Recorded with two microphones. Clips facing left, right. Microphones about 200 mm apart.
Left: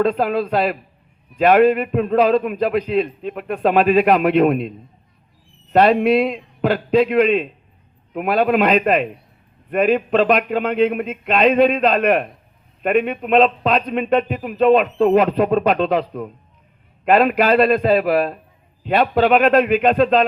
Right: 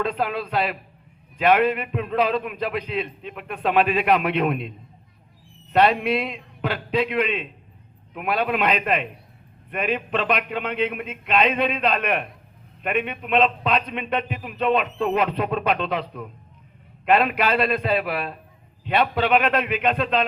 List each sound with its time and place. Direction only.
0.0 s a man's voice: 45° left (ahead or behind)
5.7 s a man's voice: 45° left (ahead or behind)